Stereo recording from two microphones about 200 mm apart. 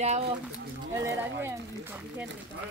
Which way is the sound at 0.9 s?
15° right (ahead or behind).